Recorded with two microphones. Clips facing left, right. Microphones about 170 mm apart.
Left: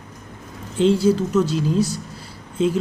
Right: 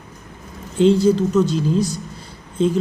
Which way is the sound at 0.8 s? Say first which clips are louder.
Right 2 dB; 5° left (ahead or behind).